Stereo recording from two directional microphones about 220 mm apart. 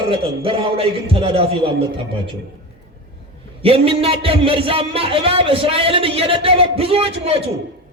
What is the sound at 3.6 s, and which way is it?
A man's voice, 25° right (ahead or behind).